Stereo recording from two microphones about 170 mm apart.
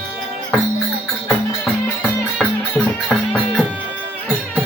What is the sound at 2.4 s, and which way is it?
Music, centre (ahead or behind).